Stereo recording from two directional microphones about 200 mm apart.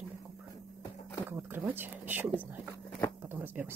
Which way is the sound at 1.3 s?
10° right (ahead or behind).